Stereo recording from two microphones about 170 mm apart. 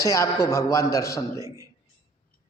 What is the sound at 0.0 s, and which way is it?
A man's voice, 20° left (ahead or behind).